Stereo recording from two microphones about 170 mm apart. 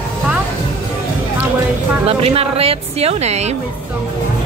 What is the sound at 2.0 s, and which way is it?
Speech, 35° right (ahead or behind).